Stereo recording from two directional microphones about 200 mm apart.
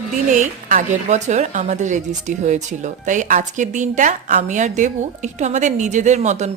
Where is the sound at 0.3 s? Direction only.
40° right (ahead or behind).